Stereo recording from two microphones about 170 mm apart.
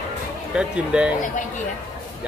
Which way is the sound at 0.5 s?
5° right (ahead or behind).